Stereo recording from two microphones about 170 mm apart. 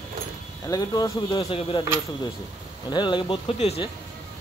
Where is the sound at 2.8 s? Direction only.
25° left (ahead or behind).